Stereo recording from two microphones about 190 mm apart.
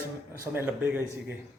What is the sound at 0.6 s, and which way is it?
Speech, 10° right (ahead or behind).